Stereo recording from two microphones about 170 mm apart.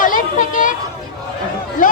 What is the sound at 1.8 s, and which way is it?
Speech, 55° left (ahead or behind).